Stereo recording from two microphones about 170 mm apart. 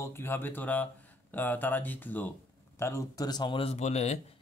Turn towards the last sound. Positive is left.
turn(degrees=40)  # may be behind; listen again after turning